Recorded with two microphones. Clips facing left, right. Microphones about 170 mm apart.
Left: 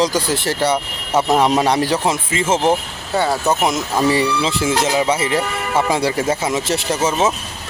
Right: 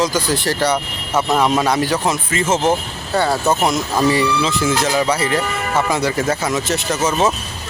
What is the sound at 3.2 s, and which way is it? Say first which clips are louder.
Speech: even; centre (ahead or behind).